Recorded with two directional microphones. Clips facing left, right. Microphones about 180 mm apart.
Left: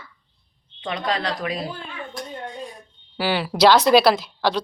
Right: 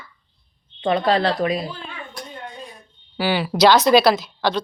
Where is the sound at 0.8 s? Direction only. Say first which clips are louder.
Right 7 dB; 30° right (ahead or behind).